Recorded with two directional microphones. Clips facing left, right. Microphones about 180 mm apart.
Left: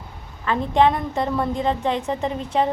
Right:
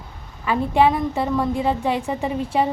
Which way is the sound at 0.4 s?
10° right (ahead or behind).